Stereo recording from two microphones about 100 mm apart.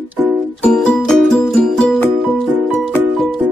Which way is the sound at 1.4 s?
Centre (ahead or behind).